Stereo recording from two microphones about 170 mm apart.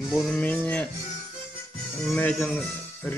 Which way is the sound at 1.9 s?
5° left (ahead or behind).